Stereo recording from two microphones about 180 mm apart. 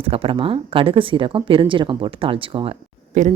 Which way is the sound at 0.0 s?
30° right (ahead or behind).